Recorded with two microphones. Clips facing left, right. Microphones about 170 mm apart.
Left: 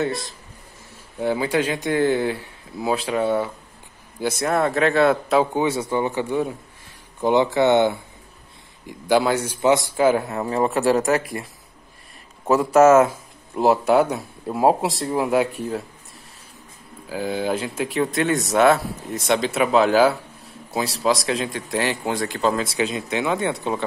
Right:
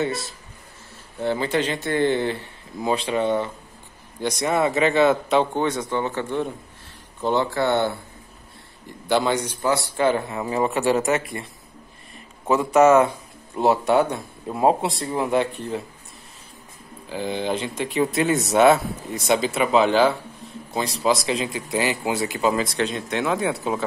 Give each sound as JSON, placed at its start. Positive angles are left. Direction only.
{"t": 0.0, "sound": "speech", "side_deg": -5}
{"t": 1.2, "sound": "speech", "side_deg": 10}
{"t": 9.1, "sound": "speech", "side_deg": 5}
{"t": 9.6, "sound": "speech", "side_deg": 20}
{"t": 9.9, "sound": "speech", "side_deg": 5}
{"t": 12.4, "sound": "speech", "side_deg": 0}
{"t": 17.1, "sound": "speech", "side_deg": 5}